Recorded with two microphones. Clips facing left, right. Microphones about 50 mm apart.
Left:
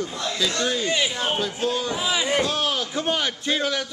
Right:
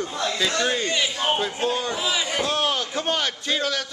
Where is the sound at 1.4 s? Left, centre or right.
Centre.